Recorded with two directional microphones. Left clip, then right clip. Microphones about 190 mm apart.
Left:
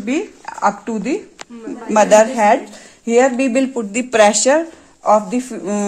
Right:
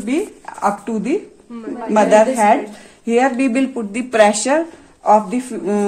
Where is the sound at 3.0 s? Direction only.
40° left (ahead or behind).